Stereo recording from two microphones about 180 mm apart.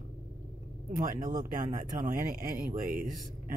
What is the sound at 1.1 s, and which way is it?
Speech, 45° right (ahead or behind).